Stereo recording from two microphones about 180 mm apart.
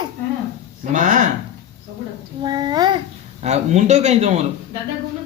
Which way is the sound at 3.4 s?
40° right (ahead or behind).